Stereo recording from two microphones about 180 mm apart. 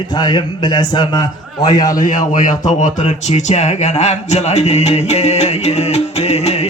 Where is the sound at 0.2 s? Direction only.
25° left (ahead or behind).